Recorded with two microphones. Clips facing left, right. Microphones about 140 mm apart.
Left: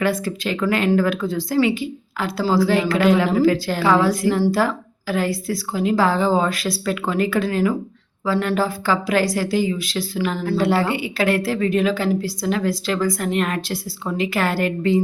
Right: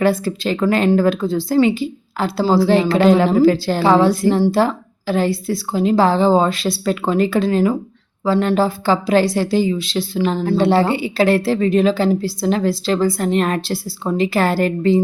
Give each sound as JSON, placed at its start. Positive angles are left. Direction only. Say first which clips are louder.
{"t": 0.0, "sound": "a woman's voice", "louder": "right 4 dB", "side_deg": -30}